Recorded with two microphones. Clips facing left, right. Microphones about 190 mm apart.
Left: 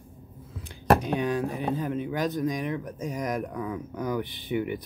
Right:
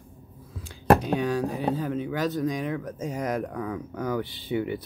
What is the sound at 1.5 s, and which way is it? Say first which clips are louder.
Speech: right 1 dB; 15° left (ahead or behind).